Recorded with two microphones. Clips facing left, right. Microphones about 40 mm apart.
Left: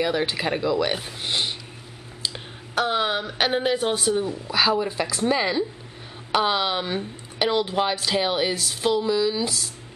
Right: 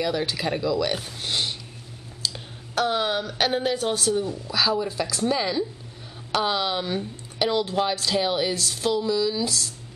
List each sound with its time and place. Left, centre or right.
0.0 s speech: left